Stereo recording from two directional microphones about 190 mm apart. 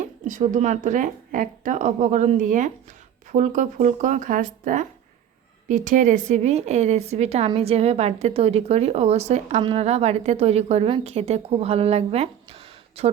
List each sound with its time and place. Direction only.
0.0 s a woman's voice: 40° right (ahead or behind)